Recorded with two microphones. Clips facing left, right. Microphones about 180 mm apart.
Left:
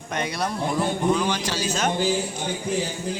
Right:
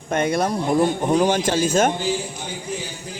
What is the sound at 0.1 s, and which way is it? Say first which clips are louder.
A man's voice: right 7 dB; 50° right (ahead or behind).